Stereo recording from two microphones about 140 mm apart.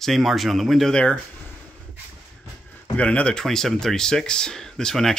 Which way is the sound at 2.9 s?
10° left (ahead or behind).